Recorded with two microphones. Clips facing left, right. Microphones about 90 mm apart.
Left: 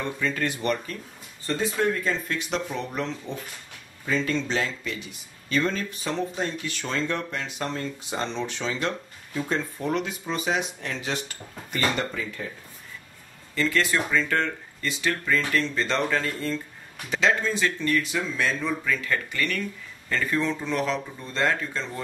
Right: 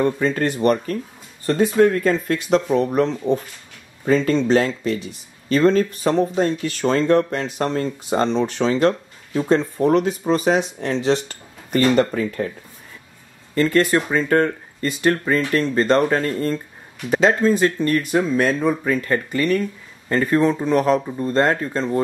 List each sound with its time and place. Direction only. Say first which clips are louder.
0.0 s speech: right 9 dB; 40° right (ahead or behind)
1.4 s speech: right 10 dB; 55° right (ahead or behind)
13.6 s speech: right 7 dB; 45° right (ahead or behind)